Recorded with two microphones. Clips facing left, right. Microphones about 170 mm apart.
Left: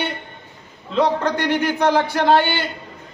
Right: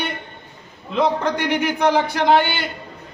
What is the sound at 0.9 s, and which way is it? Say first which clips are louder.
A man's voice: left 1 dB; 10° right (ahead or behind).